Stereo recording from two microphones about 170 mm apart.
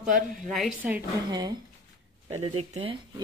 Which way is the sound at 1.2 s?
25° right (ahead or behind).